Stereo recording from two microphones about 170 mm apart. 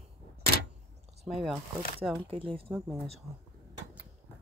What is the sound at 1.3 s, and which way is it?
Speech, centre (ahead or behind).